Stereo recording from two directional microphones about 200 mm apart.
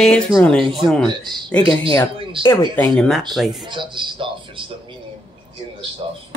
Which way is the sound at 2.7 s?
5° left (ahead or behind).